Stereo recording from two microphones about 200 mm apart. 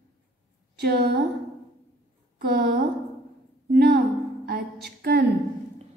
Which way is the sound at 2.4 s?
50° right (ahead or behind).